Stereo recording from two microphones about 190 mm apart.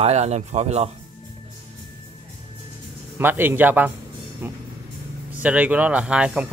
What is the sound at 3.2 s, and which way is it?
Speech, 10° right (ahead or behind).